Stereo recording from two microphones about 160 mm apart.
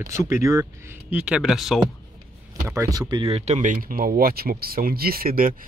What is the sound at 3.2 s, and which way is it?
Speech, 40° right (ahead or behind).